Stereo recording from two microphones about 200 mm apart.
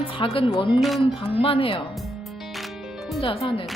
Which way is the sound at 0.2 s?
25° left (ahead or behind).